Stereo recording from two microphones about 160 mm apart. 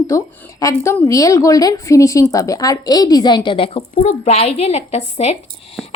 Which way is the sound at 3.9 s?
50° left (ahead or behind).